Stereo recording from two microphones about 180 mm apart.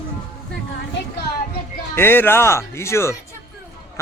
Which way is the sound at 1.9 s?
10° left (ahead or behind).